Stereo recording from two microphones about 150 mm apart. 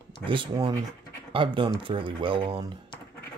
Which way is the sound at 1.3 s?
35° right (ahead or behind).